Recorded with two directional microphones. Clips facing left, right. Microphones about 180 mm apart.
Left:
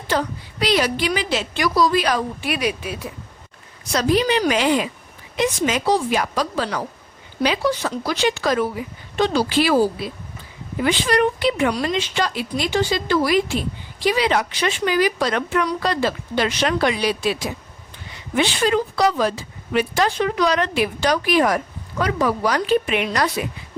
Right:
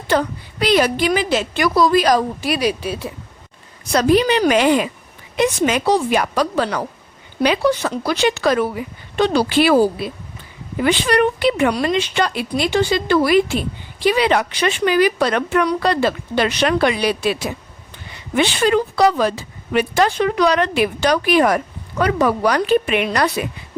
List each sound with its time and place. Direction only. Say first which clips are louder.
0.1 s a woman's voice: right 4 dB; 60° right (ahead or behind)
0.6 s a woman's voice: right 4 dB; 50° right (ahead or behind); by 3.1 s 30° right (ahead or behind)
3.9 s speech: right 4 dB; 60° right (ahead or behind)